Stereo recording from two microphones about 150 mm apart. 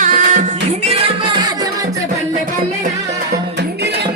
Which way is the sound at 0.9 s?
30° right (ahead or behind).